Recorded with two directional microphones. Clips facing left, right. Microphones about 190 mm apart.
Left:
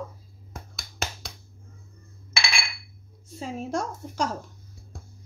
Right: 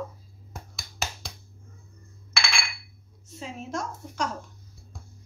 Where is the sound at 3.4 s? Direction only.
35° left (ahead or behind).